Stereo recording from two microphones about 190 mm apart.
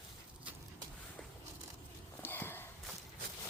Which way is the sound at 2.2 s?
10° left (ahead or behind).